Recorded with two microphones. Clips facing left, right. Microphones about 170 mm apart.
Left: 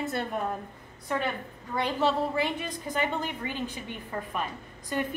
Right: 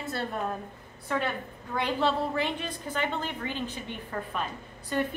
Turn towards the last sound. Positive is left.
turn(degrees=5)  # may be behind; listen again after turning